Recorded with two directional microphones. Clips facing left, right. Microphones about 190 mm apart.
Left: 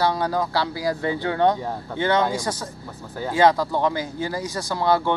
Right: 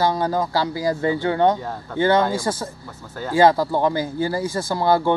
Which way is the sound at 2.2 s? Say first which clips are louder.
Right 2 dB; centre (ahead or behind).